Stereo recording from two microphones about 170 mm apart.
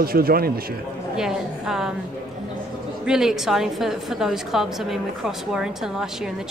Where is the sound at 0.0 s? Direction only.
60° right (ahead or behind).